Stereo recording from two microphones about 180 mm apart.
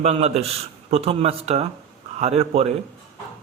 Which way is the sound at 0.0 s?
35° right (ahead or behind).